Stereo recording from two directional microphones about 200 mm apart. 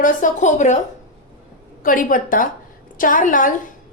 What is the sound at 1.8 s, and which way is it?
A woman's voice, 45° left (ahead or behind).